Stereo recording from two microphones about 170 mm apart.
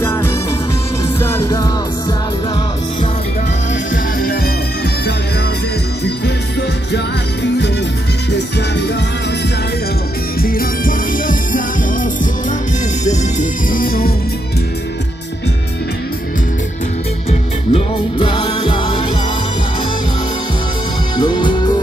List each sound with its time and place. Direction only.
0.0 s music: 15° left (ahead or behind)
3.9 s music: 55° left (ahead or behind)
10.4 s music: 55° left (ahead or behind)
13.1 s music: 50° left (ahead or behind)
17.3 s music: 35° left (ahead or behind)
21.2 s music: 25° left (ahead or behind)